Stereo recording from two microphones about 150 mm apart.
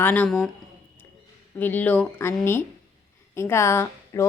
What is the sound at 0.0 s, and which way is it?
Speech, 10° left (ahead or behind).